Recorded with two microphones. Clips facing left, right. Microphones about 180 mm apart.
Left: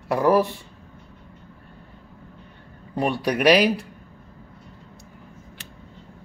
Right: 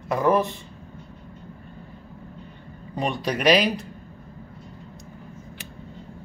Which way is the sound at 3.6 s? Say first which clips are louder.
Left 4 dB; 10° left (ahead or behind).